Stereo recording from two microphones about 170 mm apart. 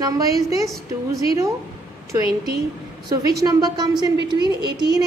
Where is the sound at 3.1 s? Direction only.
20° right (ahead or behind).